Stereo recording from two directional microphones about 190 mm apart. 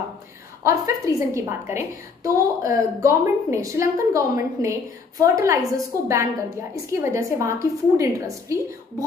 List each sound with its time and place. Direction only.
0.7 s a woman's voice: 20° right (ahead or behind)